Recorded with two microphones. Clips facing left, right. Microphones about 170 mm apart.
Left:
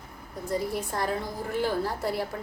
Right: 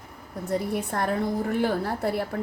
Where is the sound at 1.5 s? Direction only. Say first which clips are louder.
Right 2 dB; 55° right (ahead or behind).